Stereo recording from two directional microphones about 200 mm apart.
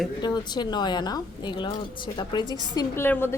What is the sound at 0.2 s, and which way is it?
A woman's voice, 20° left (ahead or behind).